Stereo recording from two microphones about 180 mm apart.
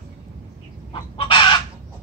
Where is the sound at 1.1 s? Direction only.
30° left (ahead or behind).